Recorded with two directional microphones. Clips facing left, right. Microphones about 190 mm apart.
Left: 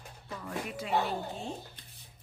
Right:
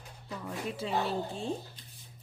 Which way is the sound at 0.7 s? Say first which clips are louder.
Left 1 dB; 30° right (ahead or behind).